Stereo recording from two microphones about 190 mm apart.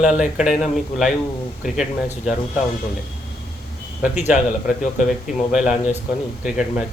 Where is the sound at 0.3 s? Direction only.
5° right (ahead or behind).